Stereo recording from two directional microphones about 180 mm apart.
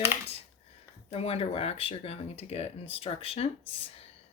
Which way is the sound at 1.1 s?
35° left (ahead or behind).